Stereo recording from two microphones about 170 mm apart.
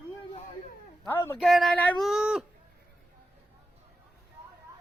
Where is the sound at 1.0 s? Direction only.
15° left (ahead or behind).